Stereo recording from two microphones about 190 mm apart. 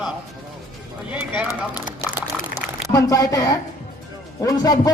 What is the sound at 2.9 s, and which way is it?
A man's voice, 20° left (ahead or behind).